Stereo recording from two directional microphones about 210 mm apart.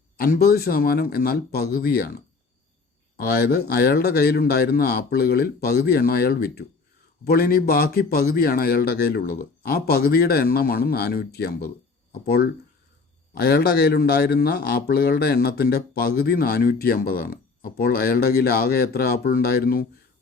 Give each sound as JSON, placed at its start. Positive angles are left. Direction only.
{"t": 0.2, "sound": "a man's voice", "side_deg": 45}